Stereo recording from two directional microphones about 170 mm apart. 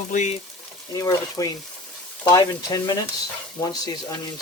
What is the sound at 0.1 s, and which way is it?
Speech, 45° left (ahead or behind).